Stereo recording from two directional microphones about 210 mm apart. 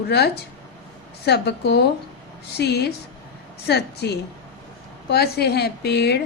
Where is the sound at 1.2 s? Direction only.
50° left (ahead or behind).